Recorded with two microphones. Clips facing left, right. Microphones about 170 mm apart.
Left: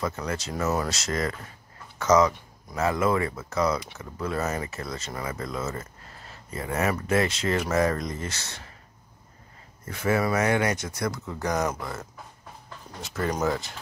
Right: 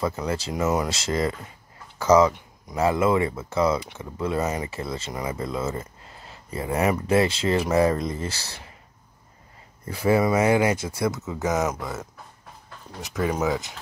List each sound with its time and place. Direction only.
0.0 s speech: 30° right (ahead or behind)
4.6 s speech: 30° right (ahead or behind)
9.8 s speech: 30° right (ahead or behind)
11.2 s speech: 5° right (ahead or behind)
13.2 s speech: 5° right (ahead or behind)